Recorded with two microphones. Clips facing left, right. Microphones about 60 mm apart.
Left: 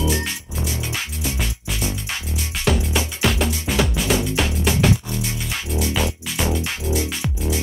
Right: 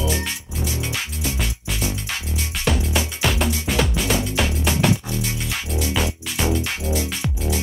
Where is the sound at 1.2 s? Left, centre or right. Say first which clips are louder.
Even; centre.